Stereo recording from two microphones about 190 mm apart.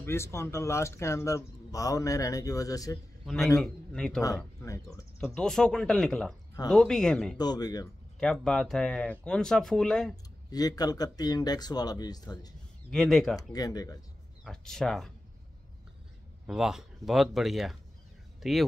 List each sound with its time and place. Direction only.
0.0 s speech: 15° left (ahead or behind)
3.6 s speech: 5° left (ahead or behind)
4.6 s speech: 15° left (ahead or behind)
5.2 s speech: 5° left (ahead or behind)
7.3 s speech: 20° left (ahead or behind)
8.2 s speech: 5° left (ahead or behind)
10.5 s speech: 20° left (ahead or behind)
12.9 s speech: centre (ahead or behind)
13.4 s speech: 20° left (ahead or behind)
14.4 s speech: centre (ahead or behind)
16.4 s speech: 5° right (ahead or behind)